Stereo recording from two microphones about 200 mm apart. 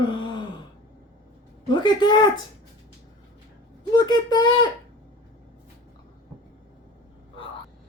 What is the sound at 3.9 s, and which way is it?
Speech, 20° left (ahead or behind).